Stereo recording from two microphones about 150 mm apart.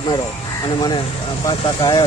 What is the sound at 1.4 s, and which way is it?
Speech, 30° left (ahead or behind).